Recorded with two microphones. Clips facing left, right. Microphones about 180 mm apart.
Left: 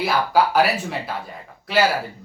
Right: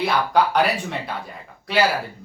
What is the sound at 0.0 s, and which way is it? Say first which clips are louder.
Speech: even; 5° left (ahead or behind).